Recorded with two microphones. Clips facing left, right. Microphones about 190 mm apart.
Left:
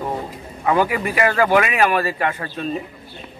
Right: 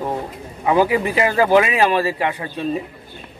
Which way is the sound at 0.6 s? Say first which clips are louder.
Right 2 dB; 15° right (ahead or behind).